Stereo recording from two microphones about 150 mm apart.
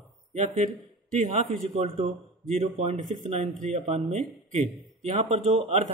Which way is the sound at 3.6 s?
45° right (ahead or behind).